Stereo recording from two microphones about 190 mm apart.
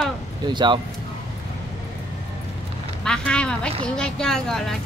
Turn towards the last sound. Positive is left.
turn(degrees=0)  # may be behind; listen again after turning